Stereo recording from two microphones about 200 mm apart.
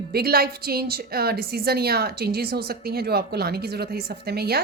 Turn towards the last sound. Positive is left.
turn(degrees=-50)  # may be behind; listen again after turning